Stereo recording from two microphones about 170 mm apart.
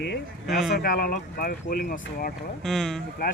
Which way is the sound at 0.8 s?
65° left (ahead or behind).